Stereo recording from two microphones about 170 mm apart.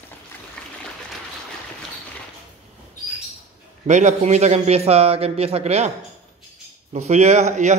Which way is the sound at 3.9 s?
45° right (ahead or behind).